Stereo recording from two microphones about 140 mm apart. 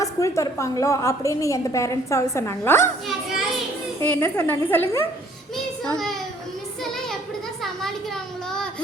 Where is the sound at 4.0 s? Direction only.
15° left (ahead or behind).